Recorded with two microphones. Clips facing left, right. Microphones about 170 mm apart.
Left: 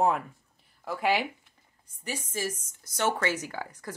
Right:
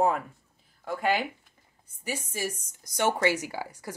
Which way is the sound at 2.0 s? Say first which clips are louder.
Even; 10° right (ahead or behind).